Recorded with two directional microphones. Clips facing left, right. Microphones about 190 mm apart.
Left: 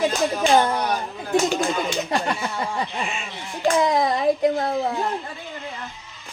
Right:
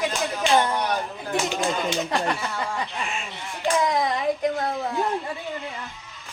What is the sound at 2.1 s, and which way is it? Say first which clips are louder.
A child's voice: left 1 dB; 30° left (ahead or behind).